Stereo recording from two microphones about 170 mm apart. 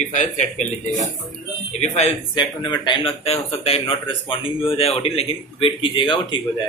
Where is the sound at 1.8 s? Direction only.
40° left (ahead or behind).